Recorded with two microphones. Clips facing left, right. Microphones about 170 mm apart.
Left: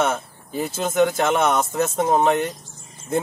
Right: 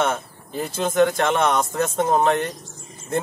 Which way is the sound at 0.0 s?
5° left (ahead or behind).